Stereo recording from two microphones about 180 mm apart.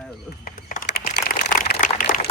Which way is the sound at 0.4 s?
50° left (ahead or behind).